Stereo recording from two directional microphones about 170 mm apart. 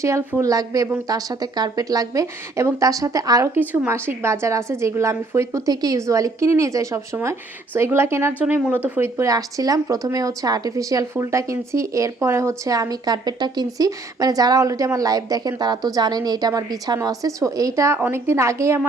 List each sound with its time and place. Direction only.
0.0 s a woman's voice: 15° right (ahead or behind)